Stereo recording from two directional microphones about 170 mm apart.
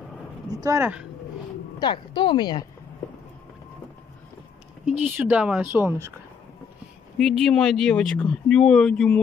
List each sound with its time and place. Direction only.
0.5 s speech: 20° right (ahead or behind)
1.8 s speech: 30° left (ahead or behind)
4.8 s speech: 5° right (ahead or behind)
7.2 s speech: centre (ahead or behind)